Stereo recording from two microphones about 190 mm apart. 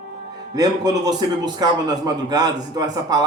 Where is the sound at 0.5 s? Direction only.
20° right (ahead or behind).